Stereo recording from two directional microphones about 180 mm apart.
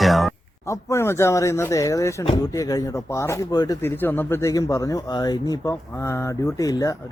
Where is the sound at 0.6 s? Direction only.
15° left (ahead or behind).